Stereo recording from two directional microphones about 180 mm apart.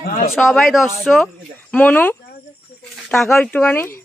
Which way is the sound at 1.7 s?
10° left (ahead or behind).